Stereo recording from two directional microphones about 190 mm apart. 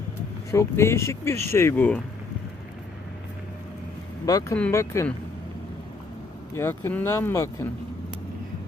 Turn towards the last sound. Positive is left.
turn(degrees=15)  # may be behind; listen again after turning